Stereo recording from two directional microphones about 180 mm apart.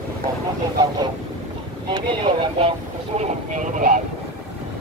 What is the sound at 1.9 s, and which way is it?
Vehicle, 30° right (ahead or behind).